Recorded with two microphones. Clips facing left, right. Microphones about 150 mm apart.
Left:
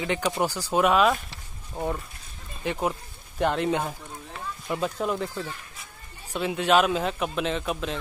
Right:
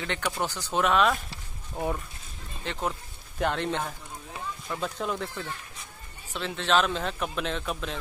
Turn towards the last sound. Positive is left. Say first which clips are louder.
# left 4 dB
turn(degrees=0)  # may be behind; listen again after turning